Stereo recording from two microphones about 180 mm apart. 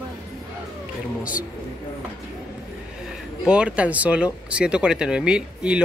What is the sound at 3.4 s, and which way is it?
Speech, 5° right (ahead or behind).